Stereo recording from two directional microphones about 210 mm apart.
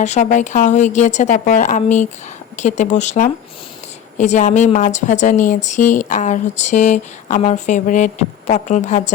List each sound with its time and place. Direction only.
0.0 s speech: 35° left (ahead or behind)